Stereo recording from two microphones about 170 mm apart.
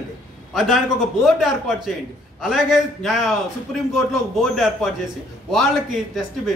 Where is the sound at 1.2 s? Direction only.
Centre (ahead or behind).